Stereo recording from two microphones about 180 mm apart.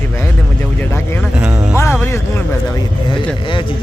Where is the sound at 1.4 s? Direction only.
15° right (ahead or behind).